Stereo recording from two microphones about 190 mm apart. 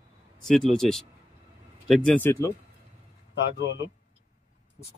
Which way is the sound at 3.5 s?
65° left (ahead or behind).